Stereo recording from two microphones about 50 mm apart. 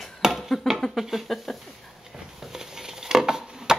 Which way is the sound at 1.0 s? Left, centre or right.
Centre.